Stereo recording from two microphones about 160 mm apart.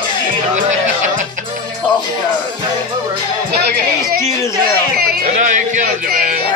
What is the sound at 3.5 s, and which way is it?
Speech, 80° right.